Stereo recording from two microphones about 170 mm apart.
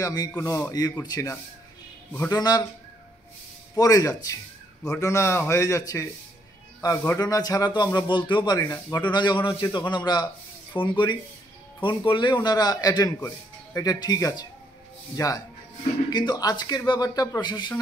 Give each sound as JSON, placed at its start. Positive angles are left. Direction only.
{"t": 0.0, "sound": "speech", "side_deg": 25}
{"t": 3.7, "sound": "a man's voice", "side_deg": 20}
{"t": 7.2, "sound": "speech", "side_deg": 20}